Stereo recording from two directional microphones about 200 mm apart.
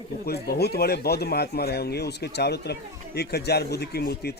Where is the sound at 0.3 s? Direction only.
50° left (ahead or behind).